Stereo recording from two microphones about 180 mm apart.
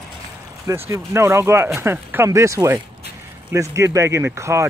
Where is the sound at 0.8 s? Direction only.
15° right (ahead or behind).